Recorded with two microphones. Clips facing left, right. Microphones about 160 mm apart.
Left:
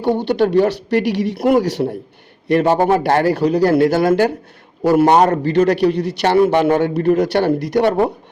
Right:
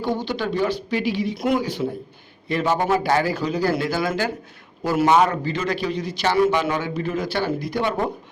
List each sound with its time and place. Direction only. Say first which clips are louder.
0.0 s speech: left 8 dB; 65° left (ahead or behind)
2.6 s a man's voice: left 5 dB; 40° left (ahead or behind)
2.9 s a man's voice: left 6 dB; 60° left (ahead or behind)